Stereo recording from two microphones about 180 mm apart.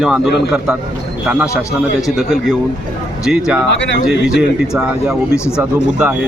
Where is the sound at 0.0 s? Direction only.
5° right (ahead or behind).